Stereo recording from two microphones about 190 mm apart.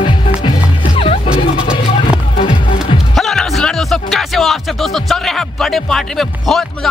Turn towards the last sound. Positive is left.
turn(degrees=0)  # may be behind; listen again after turning